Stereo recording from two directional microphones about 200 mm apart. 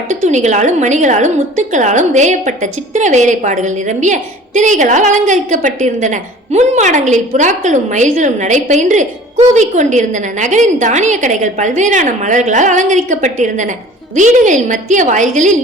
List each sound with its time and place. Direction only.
0.3 s a woman's voice: 35° right (ahead or behind)